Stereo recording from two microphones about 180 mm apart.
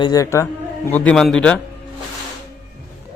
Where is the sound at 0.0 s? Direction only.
20° left (ahead or behind).